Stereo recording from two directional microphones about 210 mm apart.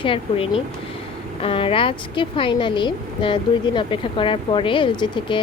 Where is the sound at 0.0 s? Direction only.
25° left (ahead or behind).